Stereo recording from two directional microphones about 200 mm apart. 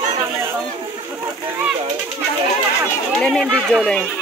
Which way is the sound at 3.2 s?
5° left (ahead or behind).